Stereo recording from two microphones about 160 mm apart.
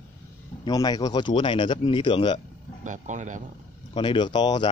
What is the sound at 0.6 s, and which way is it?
Speech, 25° left (ahead or behind).